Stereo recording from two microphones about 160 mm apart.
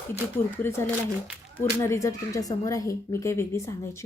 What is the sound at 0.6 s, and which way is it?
Speech, 15° left (ahead or behind).